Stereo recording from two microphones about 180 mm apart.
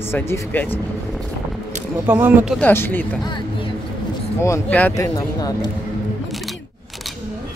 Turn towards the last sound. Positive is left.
turn(degrees=20)  # may be behind; listen again after turning